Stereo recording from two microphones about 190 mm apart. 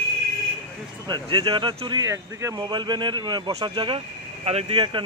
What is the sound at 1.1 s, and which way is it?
Speech, 25° right (ahead or behind).